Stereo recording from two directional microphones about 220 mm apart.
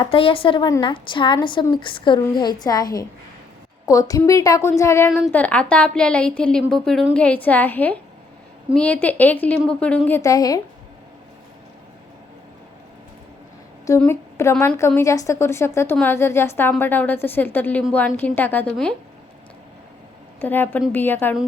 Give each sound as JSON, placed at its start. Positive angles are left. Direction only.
{"t": 0.0, "sound": "a woman's voice", "side_deg": 25}
{"t": 13.8, "sound": "a woman's voice", "side_deg": 10}
{"t": 20.4, "sound": "a woman's voice", "side_deg": 10}